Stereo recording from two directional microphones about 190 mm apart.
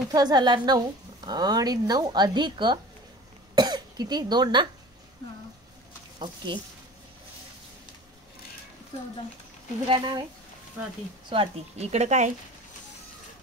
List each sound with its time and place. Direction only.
0.1 s a woman's voice: 20° right (ahead or behind)
6.1 s a woman's voice: 25° right (ahead or behind)
9.8 s a woman's voice: 25° right (ahead or behind)
11.2 s speech: 30° right (ahead or behind)